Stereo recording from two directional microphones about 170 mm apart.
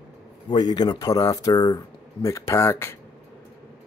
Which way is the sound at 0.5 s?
25° left (ahead or behind).